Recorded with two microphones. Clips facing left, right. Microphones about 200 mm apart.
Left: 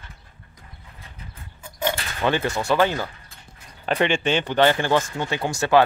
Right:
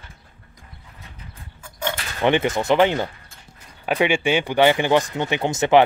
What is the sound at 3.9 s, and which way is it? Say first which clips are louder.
Speech: right 2 dB; 10° right (ahead or behind).